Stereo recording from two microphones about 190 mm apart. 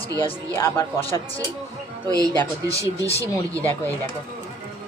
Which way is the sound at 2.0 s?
20° right (ahead or behind).